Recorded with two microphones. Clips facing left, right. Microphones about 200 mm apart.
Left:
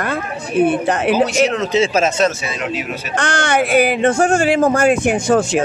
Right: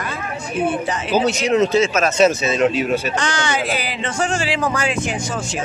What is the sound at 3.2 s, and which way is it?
Speech, 55° left (ahead or behind).